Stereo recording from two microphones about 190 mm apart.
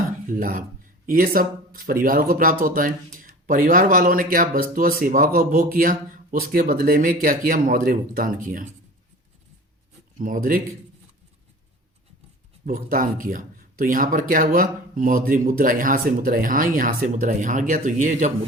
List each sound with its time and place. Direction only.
0.3 s speech: 45° right (ahead or behind)
10.2 s speech: 45° right (ahead or behind)
12.6 s speech: 45° right (ahead or behind)